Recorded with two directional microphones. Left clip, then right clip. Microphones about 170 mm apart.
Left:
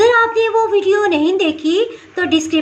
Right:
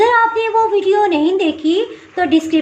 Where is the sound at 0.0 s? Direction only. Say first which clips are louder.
Left 1 dB; 10° right (ahead or behind).